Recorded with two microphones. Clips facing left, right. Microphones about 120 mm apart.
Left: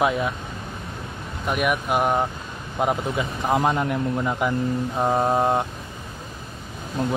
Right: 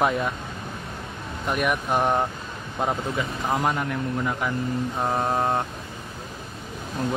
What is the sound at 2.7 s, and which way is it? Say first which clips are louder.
Speech: left 3 dB; 20° left (ahead or behind).